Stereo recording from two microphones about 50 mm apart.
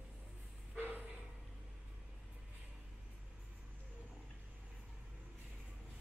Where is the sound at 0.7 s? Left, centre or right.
Right.